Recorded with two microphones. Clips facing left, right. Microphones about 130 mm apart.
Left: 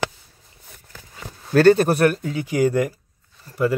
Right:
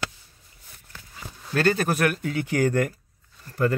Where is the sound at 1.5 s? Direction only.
35° left (ahead or behind).